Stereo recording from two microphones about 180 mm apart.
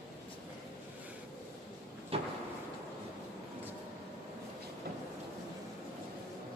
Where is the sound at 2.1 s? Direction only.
35° right (ahead or behind).